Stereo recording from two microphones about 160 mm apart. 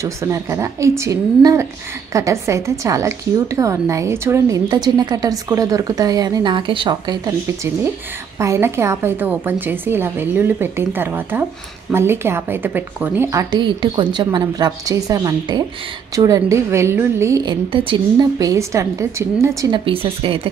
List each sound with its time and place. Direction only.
0.0 s speech: 20° right (ahead or behind)
4.6 s speech: 25° right (ahead or behind)
8.4 s a woman's voice: 15° right (ahead or behind)
13.6 s speech: 30° right (ahead or behind)
17.7 s speech: 30° right (ahead or behind)
19.7 s speech: 35° right (ahead or behind)